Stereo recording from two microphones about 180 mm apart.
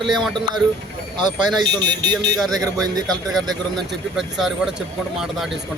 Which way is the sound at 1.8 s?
70° right (ahead or behind).